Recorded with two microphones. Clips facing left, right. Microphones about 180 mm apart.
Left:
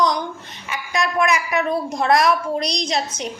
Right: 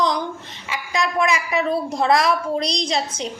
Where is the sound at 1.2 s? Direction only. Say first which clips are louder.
Left 1 dB; 30° right (ahead or behind).